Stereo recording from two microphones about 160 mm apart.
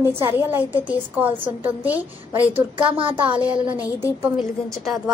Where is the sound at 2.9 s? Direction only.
35° right (ahead or behind).